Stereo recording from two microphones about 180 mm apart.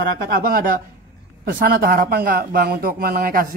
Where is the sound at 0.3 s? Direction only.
50° right (ahead or behind).